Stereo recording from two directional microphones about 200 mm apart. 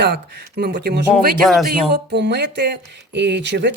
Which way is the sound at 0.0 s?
55° right (ahead or behind).